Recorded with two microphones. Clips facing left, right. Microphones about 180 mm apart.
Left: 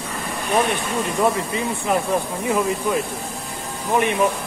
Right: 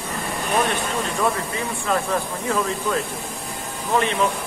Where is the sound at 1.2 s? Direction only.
20° left (ahead or behind).